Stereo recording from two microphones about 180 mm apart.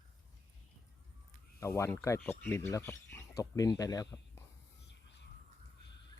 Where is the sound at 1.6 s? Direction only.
15° left (ahead or behind).